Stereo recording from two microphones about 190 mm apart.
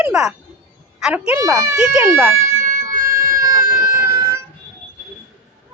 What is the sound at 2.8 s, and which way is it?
Cat, 45° right (ahead or behind).